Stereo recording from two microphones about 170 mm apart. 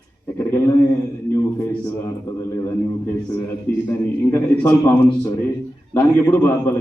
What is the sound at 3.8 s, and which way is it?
Speech, 15° left (ahead or behind).